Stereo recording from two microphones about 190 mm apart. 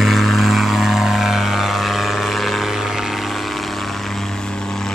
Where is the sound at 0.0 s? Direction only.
Centre (ahead or behind).